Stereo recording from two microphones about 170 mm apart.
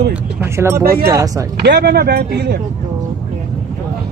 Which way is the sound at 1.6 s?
85° right.